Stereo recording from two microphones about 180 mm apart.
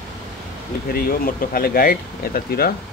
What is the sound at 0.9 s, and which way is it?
Speech, 55° left (ahead or behind).